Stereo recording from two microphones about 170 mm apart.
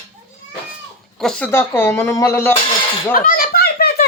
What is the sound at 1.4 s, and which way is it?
Speech, 15° left (ahead or behind).